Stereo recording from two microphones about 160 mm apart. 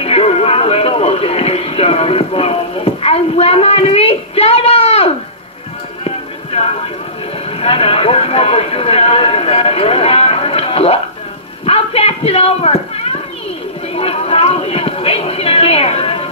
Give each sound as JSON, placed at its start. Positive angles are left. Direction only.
{"t": 0.0, "sound": "speech", "side_deg": 35}
{"t": 6.0, "sound": "music", "side_deg": 40}
{"t": 7.4, "sound": "speech", "side_deg": 35}
{"t": 13.9, "sound": "a sound", "side_deg": 40}